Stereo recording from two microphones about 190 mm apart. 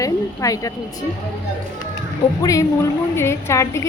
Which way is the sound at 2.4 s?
15° left (ahead or behind).